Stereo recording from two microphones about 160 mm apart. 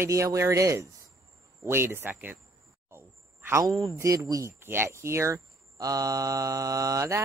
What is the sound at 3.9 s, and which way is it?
Speech, 20° right (ahead or behind).